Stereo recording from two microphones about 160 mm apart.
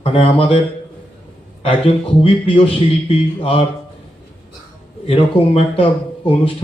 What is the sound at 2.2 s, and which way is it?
Speech, 35° left (ahead or behind).